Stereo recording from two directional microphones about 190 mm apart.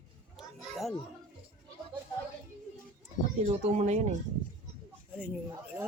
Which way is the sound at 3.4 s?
35° right (ahead or behind).